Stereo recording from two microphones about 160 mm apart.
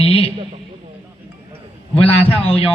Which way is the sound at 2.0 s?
35° left (ahead or behind).